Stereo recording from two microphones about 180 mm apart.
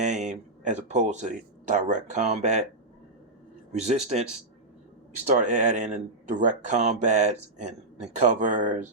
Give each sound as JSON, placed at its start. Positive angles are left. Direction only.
{"t": 0.0, "sound": "speech", "side_deg": -40}
{"t": 3.7, "sound": "speech", "side_deg": -40}